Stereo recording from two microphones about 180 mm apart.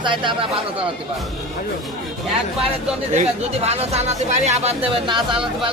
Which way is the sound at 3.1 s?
35° right (ahead or behind).